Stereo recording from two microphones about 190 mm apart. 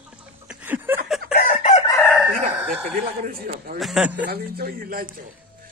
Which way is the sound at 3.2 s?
50° right (ahead or behind).